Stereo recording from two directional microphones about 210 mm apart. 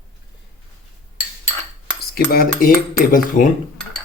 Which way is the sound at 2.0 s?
45° left (ahead or behind).